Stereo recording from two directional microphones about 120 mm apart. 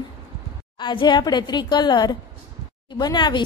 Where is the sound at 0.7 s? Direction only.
40° left (ahead or behind).